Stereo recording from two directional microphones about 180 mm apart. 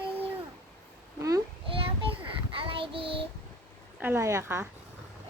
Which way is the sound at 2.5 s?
30° right (ahead or behind).